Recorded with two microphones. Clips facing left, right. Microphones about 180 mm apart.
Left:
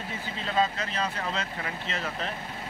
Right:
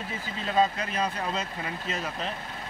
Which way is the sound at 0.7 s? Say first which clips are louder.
Right 2 dB; 10° right (ahead or behind).